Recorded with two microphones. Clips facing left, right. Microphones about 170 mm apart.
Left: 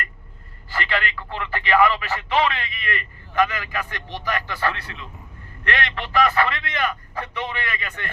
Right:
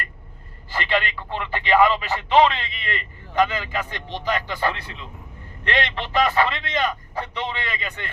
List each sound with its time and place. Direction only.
0.7 s speech: 20° right (ahead or behind)